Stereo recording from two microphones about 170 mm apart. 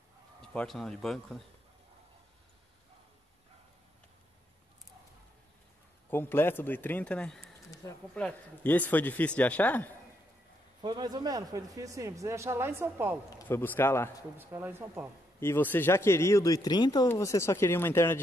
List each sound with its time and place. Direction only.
0.4 s speech: 5° left (ahead or behind)
6.0 s speech: 10° left (ahead or behind)
10.8 s speech: 25° right (ahead or behind)
13.3 s speech: 15° left (ahead or behind)
14.3 s speech: 15° right (ahead or behind)
15.4 s speech: 10° left (ahead or behind)